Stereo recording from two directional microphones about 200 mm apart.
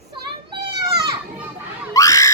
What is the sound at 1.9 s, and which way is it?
Screaming, 15° left (ahead or behind).